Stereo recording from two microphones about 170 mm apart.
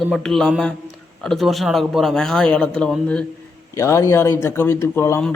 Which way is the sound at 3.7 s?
15° left (ahead or behind).